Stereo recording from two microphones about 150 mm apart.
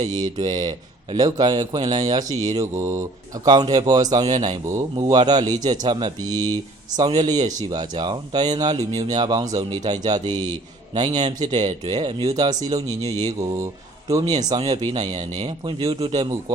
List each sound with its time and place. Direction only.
0.0 s speech: 25° right (ahead or behind)